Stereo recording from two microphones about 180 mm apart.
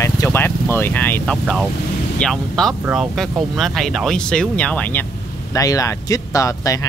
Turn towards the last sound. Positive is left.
turn(degrees=20)  # may be behind; listen again after turning